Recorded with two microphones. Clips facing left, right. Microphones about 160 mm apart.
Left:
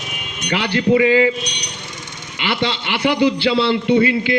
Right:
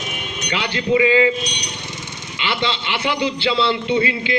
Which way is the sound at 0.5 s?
45° left (ahead or behind).